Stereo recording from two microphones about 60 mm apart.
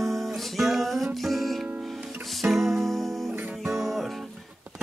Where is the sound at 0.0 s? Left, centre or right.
Centre.